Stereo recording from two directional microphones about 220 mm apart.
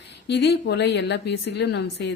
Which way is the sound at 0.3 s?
50° left (ahead or behind).